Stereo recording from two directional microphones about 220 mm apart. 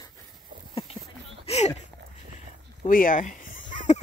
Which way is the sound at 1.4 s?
30° left (ahead or behind).